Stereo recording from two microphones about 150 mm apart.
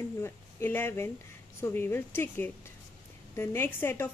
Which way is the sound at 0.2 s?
15° left (ahead or behind).